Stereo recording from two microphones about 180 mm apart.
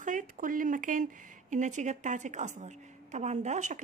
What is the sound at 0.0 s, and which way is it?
Speech, 45° right (ahead or behind).